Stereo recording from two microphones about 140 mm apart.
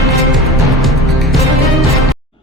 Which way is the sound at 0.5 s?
Centre (ahead or behind).